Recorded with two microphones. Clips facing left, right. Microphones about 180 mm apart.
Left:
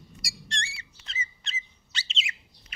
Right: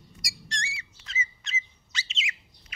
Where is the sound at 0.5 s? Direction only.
30° left (ahead or behind).